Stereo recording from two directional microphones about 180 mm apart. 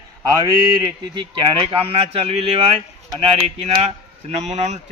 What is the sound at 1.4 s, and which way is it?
Speech, 30° right (ahead or behind).